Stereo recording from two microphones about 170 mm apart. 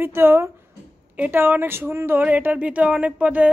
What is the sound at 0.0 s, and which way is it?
Speech, 15° right (ahead or behind).